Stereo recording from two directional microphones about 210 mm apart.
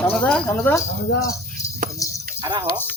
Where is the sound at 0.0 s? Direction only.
5° left (ahead or behind).